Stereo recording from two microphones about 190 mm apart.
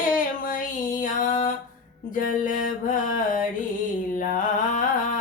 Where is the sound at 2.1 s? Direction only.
45° left (ahead or behind).